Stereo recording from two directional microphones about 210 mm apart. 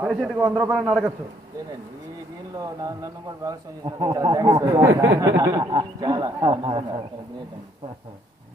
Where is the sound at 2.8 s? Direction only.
15° right (ahead or behind).